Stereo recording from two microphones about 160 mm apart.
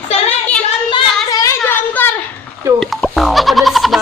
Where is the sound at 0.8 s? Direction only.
25° left (ahead or behind).